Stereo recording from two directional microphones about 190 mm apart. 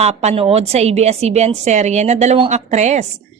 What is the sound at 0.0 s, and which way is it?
A woman's voice, 35° right (ahead or behind).